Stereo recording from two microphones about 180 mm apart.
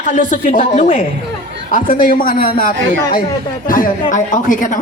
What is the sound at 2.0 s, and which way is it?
A woman's voice, 50° left (ahead or behind).